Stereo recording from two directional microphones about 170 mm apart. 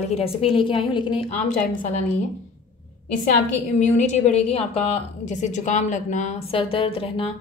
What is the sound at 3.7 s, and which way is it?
A woman's voice, 45° left (ahead or behind).